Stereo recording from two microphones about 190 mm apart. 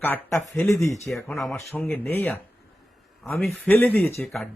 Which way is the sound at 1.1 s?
Centre (ahead or behind).